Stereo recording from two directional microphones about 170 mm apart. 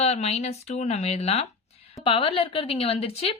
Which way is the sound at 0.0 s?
40° left (ahead or behind).